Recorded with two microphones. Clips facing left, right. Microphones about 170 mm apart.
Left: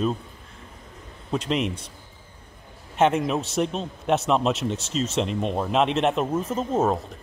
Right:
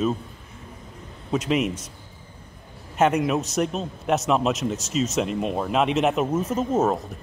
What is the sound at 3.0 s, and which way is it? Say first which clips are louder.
Speech: right 1 dB; centre (ahead or behind).